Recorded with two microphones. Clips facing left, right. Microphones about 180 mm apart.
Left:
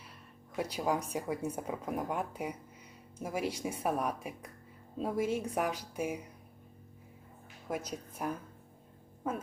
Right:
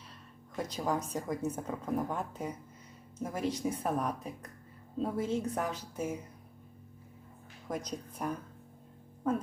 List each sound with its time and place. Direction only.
0.5 s speech: 10° left (ahead or behind)
7.7 s speech: 5° left (ahead or behind)